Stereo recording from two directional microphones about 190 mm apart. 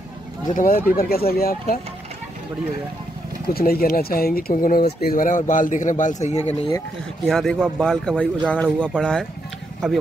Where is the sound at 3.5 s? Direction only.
50° left (ahead or behind).